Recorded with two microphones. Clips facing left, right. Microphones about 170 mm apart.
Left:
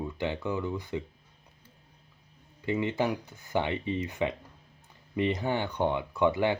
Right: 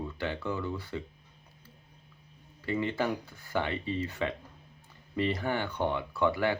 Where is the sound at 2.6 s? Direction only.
20° left (ahead or behind).